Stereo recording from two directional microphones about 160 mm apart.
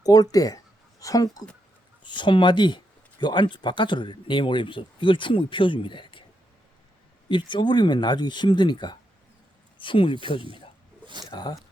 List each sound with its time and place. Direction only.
0.0 s speech: 25° left (ahead or behind)
7.3 s speech: 30° left (ahead or behind)
11.0 s a sound: 30° right (ahead or behind)
11.3 s speech: 25° left (ahead or behind)